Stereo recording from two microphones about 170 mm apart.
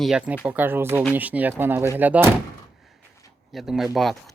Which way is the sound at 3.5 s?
Centre (ahead or behind).